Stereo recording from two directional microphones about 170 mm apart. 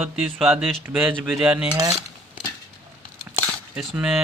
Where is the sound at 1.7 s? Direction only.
20° right (ahead or behind).